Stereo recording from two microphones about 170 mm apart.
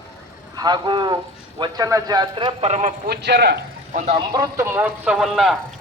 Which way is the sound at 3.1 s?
80° right.